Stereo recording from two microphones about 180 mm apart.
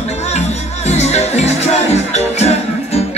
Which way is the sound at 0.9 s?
40° left (ahead or behind).